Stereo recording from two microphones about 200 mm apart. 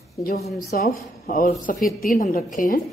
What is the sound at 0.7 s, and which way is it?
A woman's voice, 45° left (ahead or behind).